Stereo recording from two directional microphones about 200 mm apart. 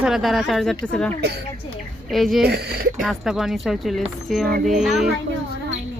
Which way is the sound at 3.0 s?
Centre (ahead or behind).